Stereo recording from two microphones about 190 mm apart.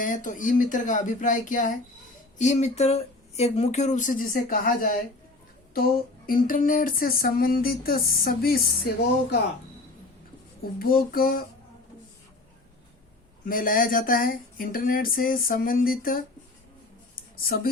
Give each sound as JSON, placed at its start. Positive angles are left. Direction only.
{"t": 0.0, "sound": "speech", "side_deg": 45}
{"t": 6.2, "sound": "speech", "side_deg": 50}
{"t": 10.8, "sound": "speech", "side_deg": 50}
{"t": 13.4, "sound": "speech", "side_deg": 45}
{"t": 17.3, "sound": "speech", "side_deg": 50}